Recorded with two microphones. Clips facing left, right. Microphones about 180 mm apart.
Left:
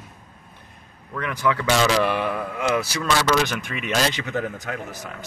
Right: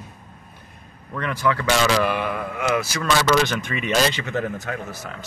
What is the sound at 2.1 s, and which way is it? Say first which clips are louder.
Mantra: left 1 dB; 30° left (ahead or behind).